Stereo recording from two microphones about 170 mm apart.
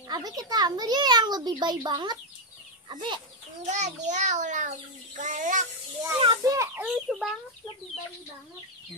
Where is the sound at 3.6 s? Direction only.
45° right (ahead or behind).